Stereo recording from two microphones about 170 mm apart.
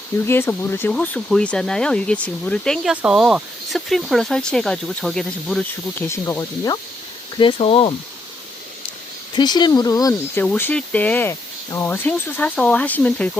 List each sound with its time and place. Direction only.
0.3 s speech: 15° left (ahead or behind)
6.1 s speech: 15° left (ahead or behind)
7.3 s speech: 30° left (ahead or behind)
9.3 s speech: 25° left (ahead or behind)
10.4 s speech: 10° left (ahead or behind)